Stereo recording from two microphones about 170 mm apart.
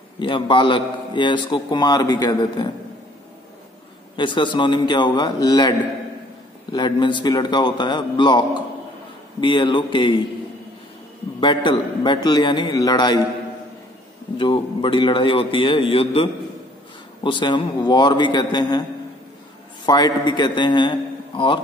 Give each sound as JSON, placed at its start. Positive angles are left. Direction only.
{"t": 0.2, "sound": "a man's voice", "side_deg": 30}
{"t": 4.2, "sound": "a man's voice", "side_deg": 25}
{"t": 11.3, "sound": "a man's voice", "side_deg": 25}
{"t": 14.4, "sound": "a man's voice", "side_deg": 30}
{"t": 19.9, "sound": "a man's voice", "side_deg": 25}